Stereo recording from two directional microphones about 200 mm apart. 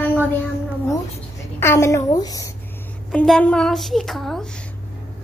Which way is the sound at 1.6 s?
15° left (ahead or behind).